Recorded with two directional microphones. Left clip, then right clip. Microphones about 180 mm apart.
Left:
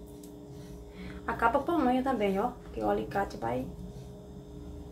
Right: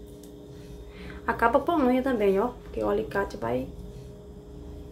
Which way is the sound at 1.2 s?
20° right (ahead or behind).